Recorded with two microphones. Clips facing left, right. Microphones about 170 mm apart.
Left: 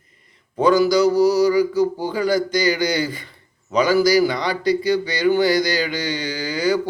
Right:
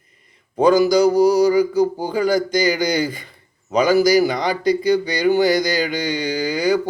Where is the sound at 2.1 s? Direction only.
15° right (ahead or behind).